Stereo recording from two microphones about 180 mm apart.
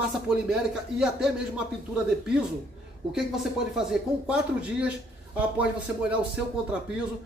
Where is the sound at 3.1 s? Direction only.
5° right (ahead or behind).